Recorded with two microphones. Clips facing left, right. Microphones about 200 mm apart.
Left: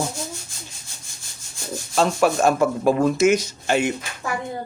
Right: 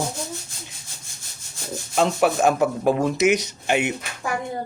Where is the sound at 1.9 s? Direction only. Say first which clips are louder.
Left 1 dB; 15° right (ahead or behind).